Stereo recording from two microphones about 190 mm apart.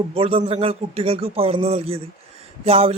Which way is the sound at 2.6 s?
30° right (ahead or behind).